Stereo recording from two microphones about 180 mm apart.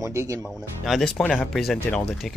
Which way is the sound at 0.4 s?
Centre (ahead or behind).